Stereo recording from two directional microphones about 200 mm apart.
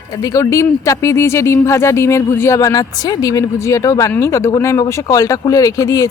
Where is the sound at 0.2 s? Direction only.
15° left (ahead or behind).